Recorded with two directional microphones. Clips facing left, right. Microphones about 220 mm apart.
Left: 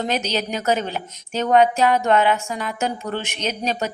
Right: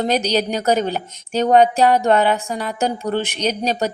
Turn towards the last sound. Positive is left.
turn(degrees=-35)  # may be behind; listen again after turning